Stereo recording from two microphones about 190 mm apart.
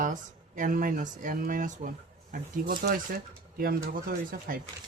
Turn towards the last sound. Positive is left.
turn(degrees=-45)  # may be behind; listen again after turning